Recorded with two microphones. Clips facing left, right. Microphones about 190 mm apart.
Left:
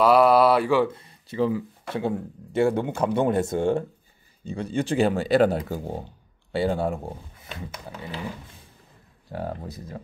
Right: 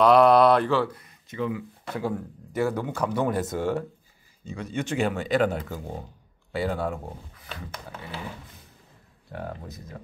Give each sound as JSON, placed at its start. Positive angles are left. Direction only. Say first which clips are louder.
{"t": 0.0, "sound": "speech", "louder": "even", "side_deg": 5}
{"t": 0.8, "sound": "speech", "louder": "left 4 dB", "side_deg": 25}
{"t": 9.3, "sound": "speech", "louder": "left 4 dB", "side_deg": 35}